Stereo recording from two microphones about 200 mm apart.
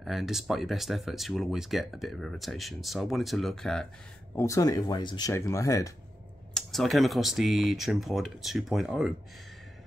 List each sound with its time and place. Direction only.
0.0 s speech: centre (ahead or behind)
4.4 s speech: 15° left (ahead or behind)
6.5 s speech: centre (ahead or behind)